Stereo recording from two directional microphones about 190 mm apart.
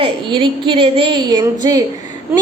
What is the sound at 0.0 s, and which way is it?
A woman's voice, 25° right (ahead or behind).